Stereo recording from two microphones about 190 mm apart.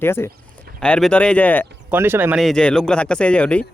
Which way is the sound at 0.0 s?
10° left (ahead or behind).